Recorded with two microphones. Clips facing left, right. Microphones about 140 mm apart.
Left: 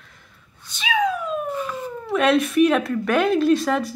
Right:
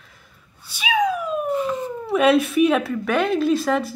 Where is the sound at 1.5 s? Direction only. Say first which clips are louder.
Right 5 dB; 20° right (ahead or behind).